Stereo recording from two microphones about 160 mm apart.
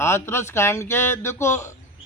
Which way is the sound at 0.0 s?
15° left (ahead or behind).